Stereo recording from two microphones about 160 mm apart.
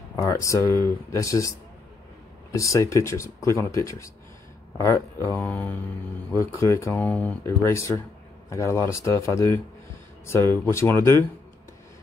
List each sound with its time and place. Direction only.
0.1 s speech: 20° left (ahead or behind)
2.5 s speech: 20° left (ahead or behind)